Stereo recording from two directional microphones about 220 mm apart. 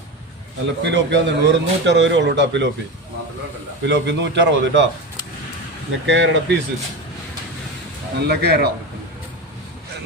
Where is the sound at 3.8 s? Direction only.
55° right (ahead or behind).